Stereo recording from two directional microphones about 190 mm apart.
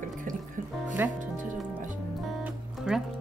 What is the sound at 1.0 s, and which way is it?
Speech, 10° right (ahead or behind).